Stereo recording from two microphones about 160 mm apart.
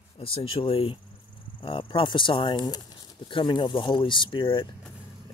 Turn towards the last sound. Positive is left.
turn(degrees=30)  # may be behind; listen again after turning